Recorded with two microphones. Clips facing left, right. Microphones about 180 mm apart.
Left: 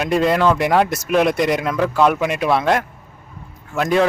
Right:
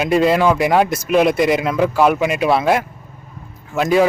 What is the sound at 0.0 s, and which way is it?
Speech, 5° right (ahead or behind).